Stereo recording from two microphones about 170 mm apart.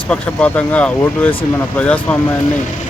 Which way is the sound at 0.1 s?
5° left (ahead or behind).